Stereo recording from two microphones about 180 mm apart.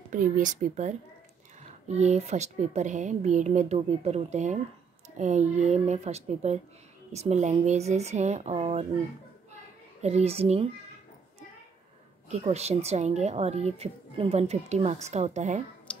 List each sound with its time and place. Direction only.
0.1 s speech: 45° right (ahead or behind)
10.0 s speech: 35° right (ahead or behind)
12.3 s speech: 35° right (ahead or behind)
15.9 s finger snapping: 5° left (ahead or behind)